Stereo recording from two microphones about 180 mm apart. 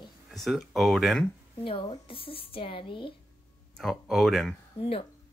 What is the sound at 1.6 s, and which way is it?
Speech, 30° left (ahead or behind).